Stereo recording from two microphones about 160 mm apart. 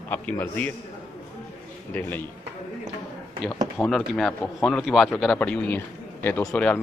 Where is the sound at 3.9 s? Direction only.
Centre (ahead or behind).